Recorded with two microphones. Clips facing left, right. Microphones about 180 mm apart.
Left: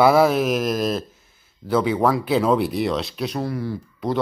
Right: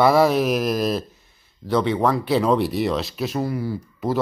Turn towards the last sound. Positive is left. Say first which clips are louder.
# right 1 dB
turn(degrees=-5)  # may be behind; listen again after turning